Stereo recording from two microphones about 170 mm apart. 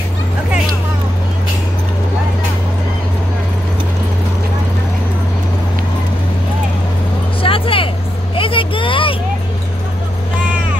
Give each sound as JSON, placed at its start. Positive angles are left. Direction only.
{"t": 7.4, "sound": "music", "side_deg": 30}
{"t": 8.4, "sound": "vehicle", "side_deg": 30}